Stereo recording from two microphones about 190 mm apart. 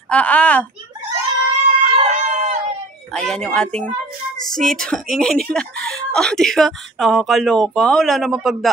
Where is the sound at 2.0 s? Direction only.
35° right (ahead or behind).